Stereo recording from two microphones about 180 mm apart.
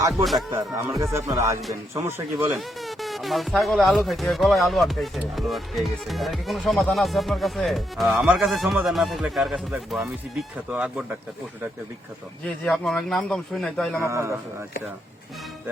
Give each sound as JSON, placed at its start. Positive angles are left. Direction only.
{"t": 0.8, "sound": "speech", "side_deg": -15}
{"t": 2.5, "sound": "speech", "side_deg": 0}
{"t": 12.6, "sound": "speech", "side_deg": 5}
{"t": 14.0, "sound": "speech", "side_deg": -15}